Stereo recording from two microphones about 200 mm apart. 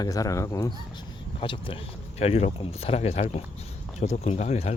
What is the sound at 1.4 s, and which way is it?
Speech, 25° left (ahead or behind).